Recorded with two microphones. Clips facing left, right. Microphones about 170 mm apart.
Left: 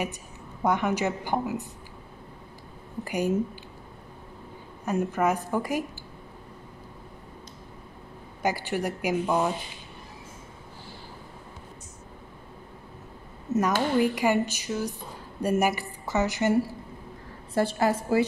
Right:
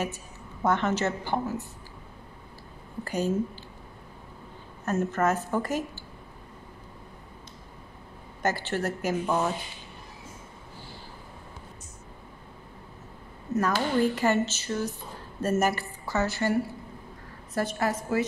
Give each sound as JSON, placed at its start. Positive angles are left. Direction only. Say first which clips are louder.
{"t": 0.0, "sound": "a woman's voice", "louder": "even", "side_deg": 15}
{"t": 3.0, "sound": "speech", "louder": "left 1 dB", "side_deg": 15}
{"t": 4.8, "sound": "speech", "louder": "left 1 dB", "side_deg": 10}
{"t": 8.4, "sound": "speech", "louder": "left 1 dB", "side_deg": 10}
{"t": 13.5, "sound": "speech", "louder": "left 2 dB", "side_deg": 20}
{"t": 17.6, "sound": "a woman's voice", "louder": "left 4 dB", "side_deg": 25}